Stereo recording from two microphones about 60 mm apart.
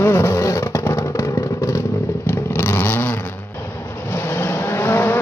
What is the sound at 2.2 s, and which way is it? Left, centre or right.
Vehicle, left.